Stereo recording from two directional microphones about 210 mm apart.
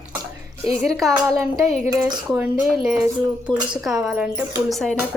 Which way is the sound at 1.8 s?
15° right (ahead or behind).